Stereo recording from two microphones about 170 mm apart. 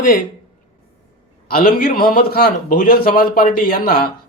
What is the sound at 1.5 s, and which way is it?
A man's voice, 60° left (ahead or behind).